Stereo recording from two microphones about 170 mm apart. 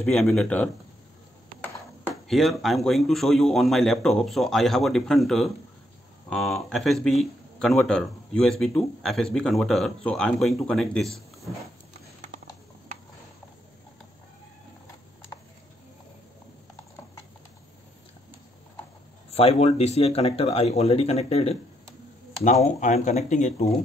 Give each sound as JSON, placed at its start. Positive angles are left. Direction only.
{"t": 0.0, "sound": "speech", "side_deg": 5}
{"t": 2.2, "sound": "speech", "side_deg": 0}
{"t": 19.3, "sound": "speech", "side_deg": 40}